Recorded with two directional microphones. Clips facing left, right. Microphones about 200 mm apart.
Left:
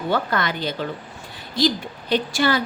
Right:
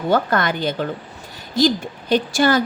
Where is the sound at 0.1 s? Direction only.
45° right (ahead or behind).